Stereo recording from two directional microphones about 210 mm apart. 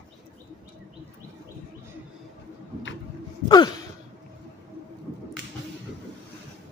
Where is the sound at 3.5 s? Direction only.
20° left (ahead or behind).